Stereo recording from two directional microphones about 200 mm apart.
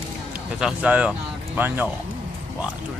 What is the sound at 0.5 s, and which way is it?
Speech, 5° right (ahead or behind).